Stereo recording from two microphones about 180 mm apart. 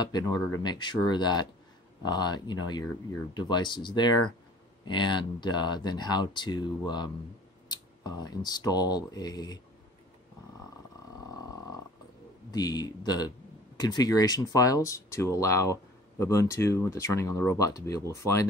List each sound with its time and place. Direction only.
0.0 s speech: 20° left (ahead or behind)
12.4 s speech: 20° left (ahead or behind)